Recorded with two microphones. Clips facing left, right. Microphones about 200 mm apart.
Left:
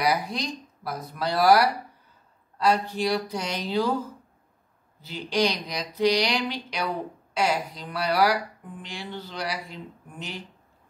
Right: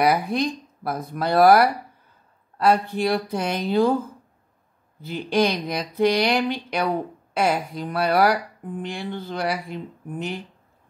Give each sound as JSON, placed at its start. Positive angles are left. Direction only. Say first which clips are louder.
{"t": 0.0, "sound": "speech", "louder": "right 6 dB", "side_deg": -55}
{"t": 5.0, "sound": "speech", "louder": "right 4 dB", "side_deg": -55}